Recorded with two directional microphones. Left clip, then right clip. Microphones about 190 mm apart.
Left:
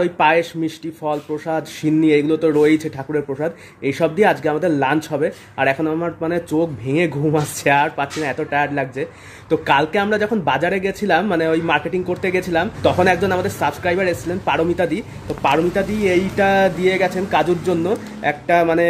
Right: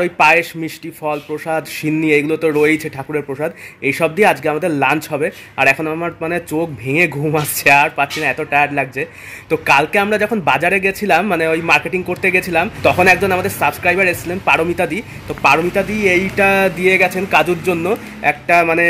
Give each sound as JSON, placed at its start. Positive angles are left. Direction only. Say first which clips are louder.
{"t": 0.0, "sound": "speech", "louder": "right 3 dB", "side_deg": -10}